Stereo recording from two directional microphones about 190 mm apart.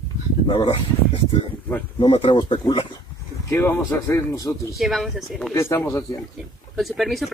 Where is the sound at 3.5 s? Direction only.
15° left (ahead or behind).